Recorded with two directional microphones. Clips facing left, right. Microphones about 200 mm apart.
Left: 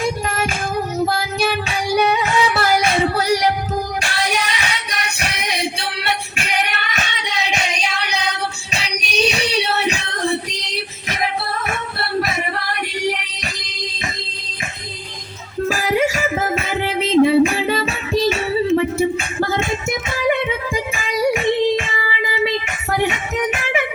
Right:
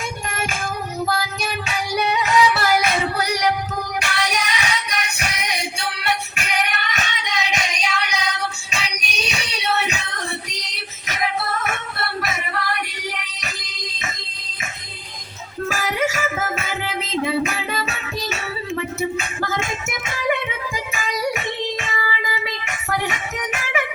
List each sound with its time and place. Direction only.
0.0 s child singing: 35° left (ahead or behind)
4.0 s music: 30° left (ahead or behind)
6.3 s child singing: 35° left (ahead or behind)
11.1 s music: 30° left (ahead or behind)
15.6 s music: 35° left (ahead or behind)